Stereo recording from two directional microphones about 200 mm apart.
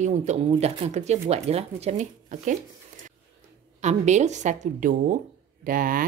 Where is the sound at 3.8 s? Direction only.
35° right (ahead or behind).